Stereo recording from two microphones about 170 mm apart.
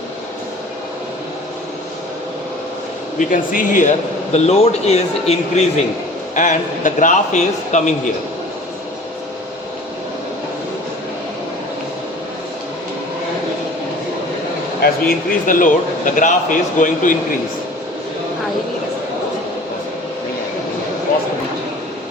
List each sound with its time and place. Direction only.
3.2 s a man's voice: 50° left (ahead or behind)
14.8 s a man's voice: 55° left (ahead or behind)